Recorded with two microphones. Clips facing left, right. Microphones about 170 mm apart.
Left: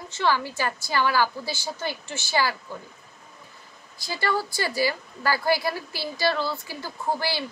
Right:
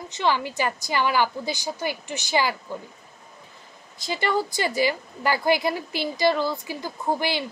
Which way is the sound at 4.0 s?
20° right (ahead or behind).